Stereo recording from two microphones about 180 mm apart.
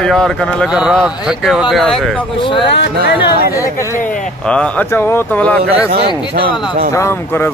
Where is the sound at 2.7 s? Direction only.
65° left (ahead or behind).